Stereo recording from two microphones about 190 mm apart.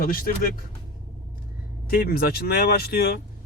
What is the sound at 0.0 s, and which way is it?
Speech, 45° left (ahead or behind).